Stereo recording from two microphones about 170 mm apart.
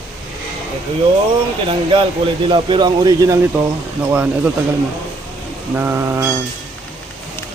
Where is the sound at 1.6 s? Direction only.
30° right (ahead or behind).